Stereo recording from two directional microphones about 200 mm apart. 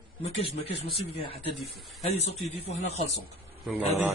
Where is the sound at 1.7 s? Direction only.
Centre (ahead or behind).